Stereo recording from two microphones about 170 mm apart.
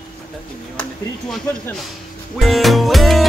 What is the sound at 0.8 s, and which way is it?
Speech, 5° left (ahead or behind).